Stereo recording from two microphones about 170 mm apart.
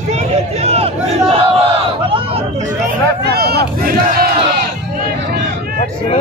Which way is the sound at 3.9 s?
60° right (ahead or behind).